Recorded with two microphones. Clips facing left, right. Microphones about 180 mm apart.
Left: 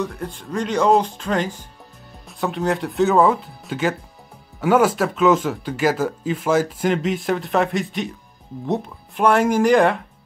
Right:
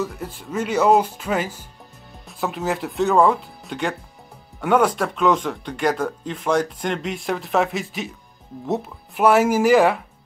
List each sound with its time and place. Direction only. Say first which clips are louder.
0.0 s speech: left 1 dB; 5° right (ahead or behind)